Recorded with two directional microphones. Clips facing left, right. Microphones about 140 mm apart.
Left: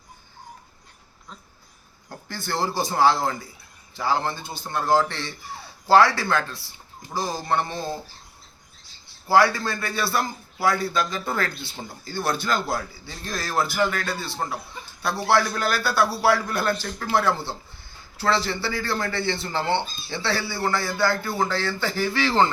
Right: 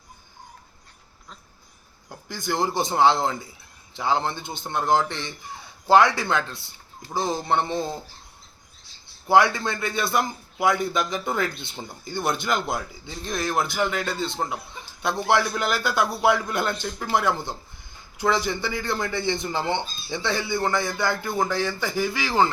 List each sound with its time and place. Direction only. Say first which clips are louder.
2.0 s a man's voice: right 2 dB; 15° right (ahead or behind)
9.2 s a man's voice: even; 20° right (ahead or behind)